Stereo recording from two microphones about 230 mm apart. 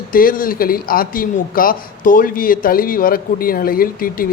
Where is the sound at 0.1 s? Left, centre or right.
Left.